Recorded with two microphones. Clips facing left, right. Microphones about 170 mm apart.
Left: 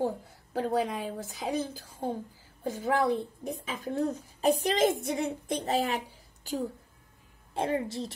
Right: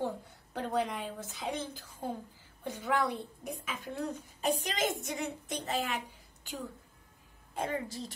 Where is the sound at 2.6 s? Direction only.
25° left (ahead or behind).